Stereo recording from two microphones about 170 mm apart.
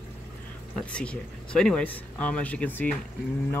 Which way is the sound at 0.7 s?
5° left (ahead or behind).